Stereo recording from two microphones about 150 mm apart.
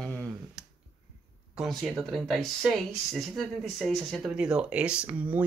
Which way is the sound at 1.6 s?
Centre (ahead or behind).